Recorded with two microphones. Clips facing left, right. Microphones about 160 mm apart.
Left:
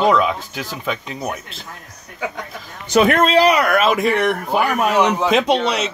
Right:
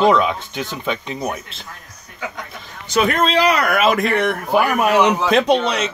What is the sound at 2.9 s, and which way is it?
Speech, 55° left (ahead or behind).